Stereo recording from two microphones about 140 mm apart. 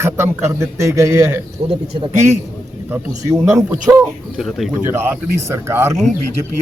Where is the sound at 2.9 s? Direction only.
15° right (ahead or behind).